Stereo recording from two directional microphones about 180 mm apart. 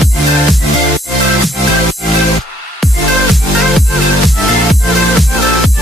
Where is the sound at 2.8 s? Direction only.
Centre (ahead or behind).